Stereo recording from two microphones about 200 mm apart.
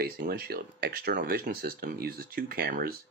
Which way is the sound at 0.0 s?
50° right (ahead or behind).